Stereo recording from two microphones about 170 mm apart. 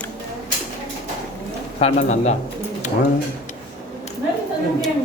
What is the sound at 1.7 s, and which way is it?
Speech, 40° left (ahead or behind).